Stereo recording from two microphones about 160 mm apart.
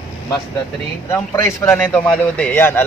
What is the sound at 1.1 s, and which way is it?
Speech, 15° left (ahead or behind).